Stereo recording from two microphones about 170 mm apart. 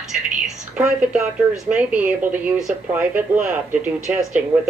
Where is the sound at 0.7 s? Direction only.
5° right (ahead or behind).